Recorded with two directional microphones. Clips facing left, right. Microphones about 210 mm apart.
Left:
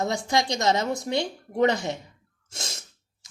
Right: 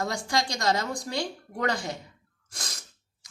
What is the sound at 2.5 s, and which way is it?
Sneeze, 25° left (ahead or behind).